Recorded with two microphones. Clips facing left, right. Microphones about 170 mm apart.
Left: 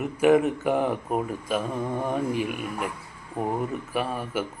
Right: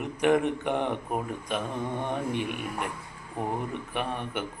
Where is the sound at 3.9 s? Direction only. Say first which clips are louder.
Left 2 dB; 5° left (ahead or behind).